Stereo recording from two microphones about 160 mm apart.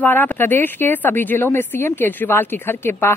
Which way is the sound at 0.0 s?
10° left (ahead or behind).